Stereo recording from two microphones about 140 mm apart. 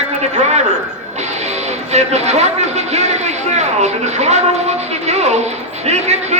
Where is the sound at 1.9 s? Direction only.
50° right (ahead or behind).